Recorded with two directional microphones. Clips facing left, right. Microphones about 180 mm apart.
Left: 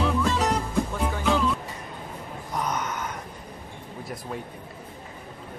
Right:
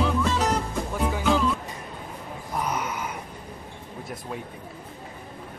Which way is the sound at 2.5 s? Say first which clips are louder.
Even; 10° right (ahead or behind).